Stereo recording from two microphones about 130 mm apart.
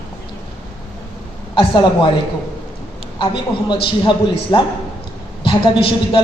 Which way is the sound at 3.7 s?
35° left (ahead or behind).